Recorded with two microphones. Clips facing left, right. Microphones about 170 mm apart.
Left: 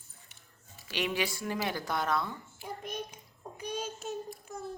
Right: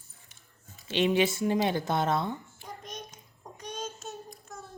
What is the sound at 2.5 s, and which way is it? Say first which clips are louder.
Child singing: left 4 dB; 10° left (ahead or behind).